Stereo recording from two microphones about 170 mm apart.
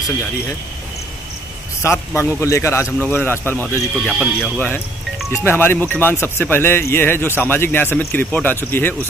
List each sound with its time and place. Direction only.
1.8 s speech: 15° left (ahead or behind)
4.0 s speech: centre (ahead or behind)